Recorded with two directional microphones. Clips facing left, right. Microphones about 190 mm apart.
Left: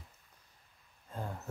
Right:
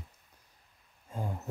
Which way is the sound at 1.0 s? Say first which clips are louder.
Right 3 dB; 10° right (ahead or behind).